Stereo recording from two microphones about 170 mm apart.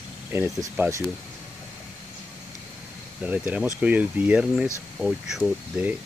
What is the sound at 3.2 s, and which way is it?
Speech, 10° right (ahead or behind).